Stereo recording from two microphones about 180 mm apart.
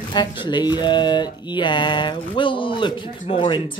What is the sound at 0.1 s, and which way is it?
Speech, 25° left (ahead or behind).